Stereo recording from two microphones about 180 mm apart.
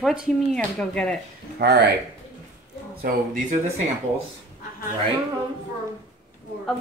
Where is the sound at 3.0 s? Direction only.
50° right (ahead or behind).